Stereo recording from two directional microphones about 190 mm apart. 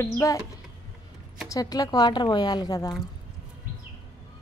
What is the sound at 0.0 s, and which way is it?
Speech, 15° left (ahead or behind).